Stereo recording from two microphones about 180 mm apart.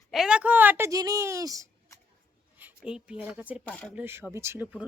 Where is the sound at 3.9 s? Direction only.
10° right (ahead or behind).